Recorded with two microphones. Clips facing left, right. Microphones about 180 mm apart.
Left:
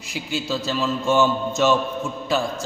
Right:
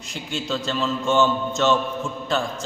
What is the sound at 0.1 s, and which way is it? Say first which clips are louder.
A man's voice: left 2 dB; 5° left (ahead or behind).